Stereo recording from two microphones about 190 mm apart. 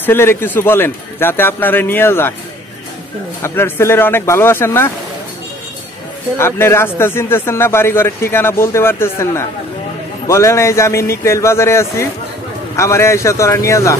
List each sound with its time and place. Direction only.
0.0 s a man's voice: 10° left (ahead or behind)
3.4 s a man's voice: 10° left (ahead or behind)
6.3 s a man's voice: 15° left (ahead or behind)